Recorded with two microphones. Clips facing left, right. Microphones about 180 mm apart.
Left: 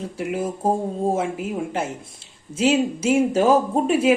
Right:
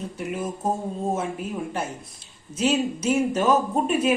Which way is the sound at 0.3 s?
30° left (ahead or behind).